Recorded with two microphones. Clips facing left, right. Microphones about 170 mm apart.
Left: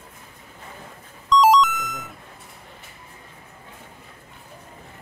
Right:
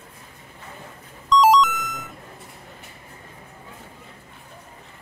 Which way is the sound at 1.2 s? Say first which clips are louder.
Even; centre (ahead or behind).